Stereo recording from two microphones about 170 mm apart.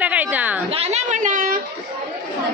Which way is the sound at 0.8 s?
40° right (ahead or behind).